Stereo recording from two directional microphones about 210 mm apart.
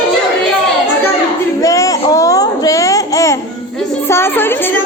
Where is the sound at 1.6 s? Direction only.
15° left (ahead or behind).